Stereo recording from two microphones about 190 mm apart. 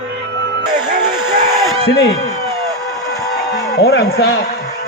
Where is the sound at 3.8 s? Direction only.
60° left (ahead or behind).